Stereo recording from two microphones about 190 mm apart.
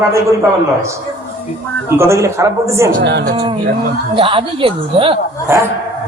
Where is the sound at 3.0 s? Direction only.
65° right (ahead or behind).